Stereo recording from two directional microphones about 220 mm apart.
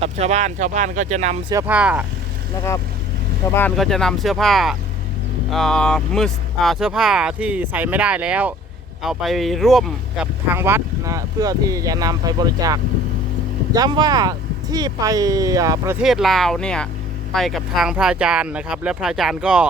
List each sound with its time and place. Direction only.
0.0 s speech: 30° right (ahead or behind)
1.5 s speech: 10° right (ahead or behind)
3.5 s speech: 5° left (ahead or behind); by 16.0 s 15° right (ahead or behind)
16.0 s speech: centre (ahead or behind)